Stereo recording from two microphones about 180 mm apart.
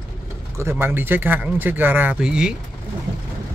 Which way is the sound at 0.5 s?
15° right (ahead or behind).